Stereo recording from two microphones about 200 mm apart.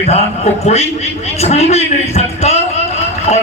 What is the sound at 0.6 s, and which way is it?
A man's voice, 30° left (ahead or behind).